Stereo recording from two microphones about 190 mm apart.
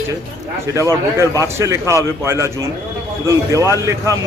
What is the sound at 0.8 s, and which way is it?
A man's voice, 15° right (ahead or behind).